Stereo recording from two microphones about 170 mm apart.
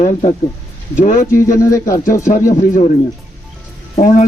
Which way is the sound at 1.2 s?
20° left (ahead or behind).